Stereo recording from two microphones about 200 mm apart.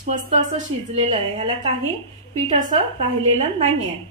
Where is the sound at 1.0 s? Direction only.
30° right (ahead or behind).